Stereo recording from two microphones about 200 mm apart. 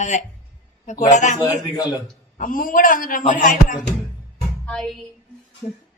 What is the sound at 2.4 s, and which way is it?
A man's voice, 45° left (ahead or behind).